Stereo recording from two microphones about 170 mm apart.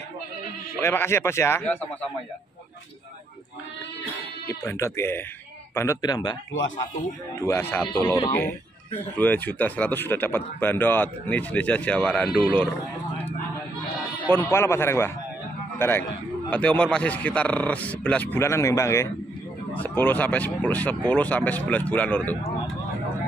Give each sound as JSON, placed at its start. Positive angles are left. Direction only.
{"t": 0.7, "sound": "speech", "side_deg": 15}
{"t": 4.5, "sound": "speech", "side_deg": 15}
{"t": 7.4, "sound": "speech", "side_deg": 15}
{"t": 14.2, "sound": "speech", "side_deg": 10}